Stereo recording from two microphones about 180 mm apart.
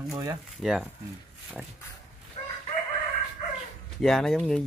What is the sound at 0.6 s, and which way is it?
Speech, centre (ahead or behind).